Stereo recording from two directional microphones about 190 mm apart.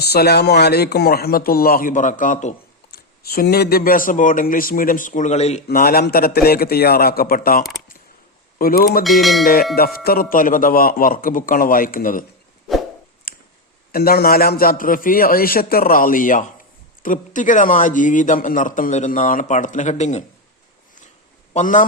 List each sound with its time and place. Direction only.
0.0 s speech: 60° left (ahead or behind); by 2.6 s 40° left (ahead or behind)
2.9 s speech: 55° left (ahead or behind); by 5.6 s 35° left (ahead or behind)
5.6 s speech: 50° left (ahead or behind)
9.0 s speech: centre (ahead or behind)
9.4 s speech: 50° left (ahead or behind)
13.3 s a sound: 50° left (ahead or behind)
13.9 s speech: 50° left (ahead or behind)
21.5 s a man's voice: 40° left (ahead or behind)